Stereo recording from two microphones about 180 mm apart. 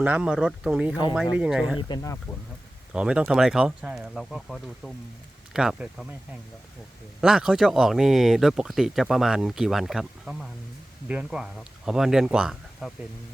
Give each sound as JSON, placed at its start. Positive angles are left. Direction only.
{"t": 0.0, "sound": "speech", "side_deg": -5}
{"t": 1.9, "sound": "speech", "side_deg": 20}
{"t": 2.9, "sound": "speech", "side_deg": -5}
{"t": 7.2, "sound": "speech", "side_deg": -5}